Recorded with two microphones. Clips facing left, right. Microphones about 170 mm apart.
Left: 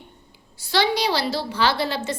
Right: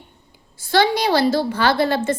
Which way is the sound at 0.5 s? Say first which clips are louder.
Right 4 dB; 50° right (ahead or behind).